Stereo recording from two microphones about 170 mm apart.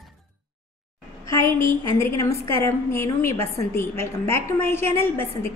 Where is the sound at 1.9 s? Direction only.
15° left (ahead or behind).